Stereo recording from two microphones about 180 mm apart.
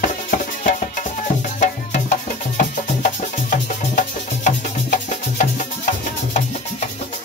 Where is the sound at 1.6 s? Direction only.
45° left (ahead or behind).